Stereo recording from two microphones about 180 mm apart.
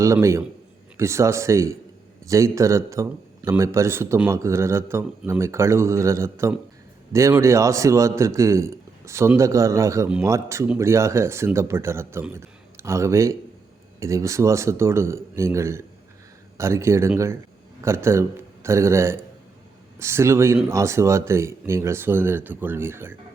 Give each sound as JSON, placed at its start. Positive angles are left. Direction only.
{"t": 0.0, "sound": "speech", "side_deg": -15}